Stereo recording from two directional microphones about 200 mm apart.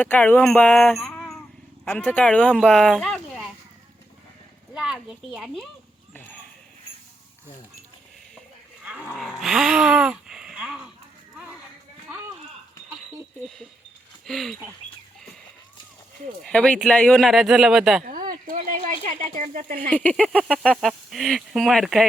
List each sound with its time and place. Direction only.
0.0 s a sound: 10° left (ahead or behind)
1.8 s speech: 5° left (ahead or behind)
4.7 s speech: 5° right (ahead or behind)
8.8 s roaring cats: 10° right (ahead or behind)
9.4 s gasp: 5° right (ahead or behind)
12.1 s a sound: 10° right (ahead or behind)
14.3 s speech: centre (ahead or behind)
16.4 s speech: 5° left (ahead or behind)
18.0 s speech: 40° right (ahead or behind)
20.0 s speech: 5° left (ahead or behind)